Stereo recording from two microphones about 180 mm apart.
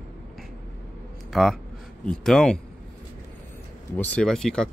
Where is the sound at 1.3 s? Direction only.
Centre (ahead or behind).